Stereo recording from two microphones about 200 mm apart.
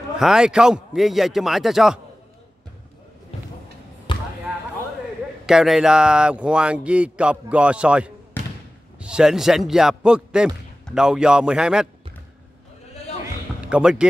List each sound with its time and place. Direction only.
0.2 s speech: 5° right (ahead or behind)
4.1 s basketball bounce: 25° left (ahead or behind)
5.5 s speech: centre (ahead or behind)
13.7 s speech: 5° right (ahead or behind)